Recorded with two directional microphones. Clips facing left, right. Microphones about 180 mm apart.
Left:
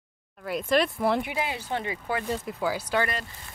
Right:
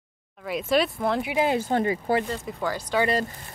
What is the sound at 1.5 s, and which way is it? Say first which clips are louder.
Speech: right 8 dB; 45° right (ahead or behind).